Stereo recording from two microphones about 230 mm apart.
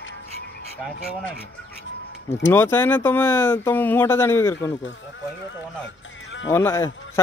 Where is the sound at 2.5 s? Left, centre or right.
Centre.